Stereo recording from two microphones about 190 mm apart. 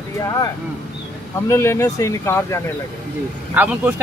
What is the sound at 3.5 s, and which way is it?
Speech, 10° right (ahead or behind).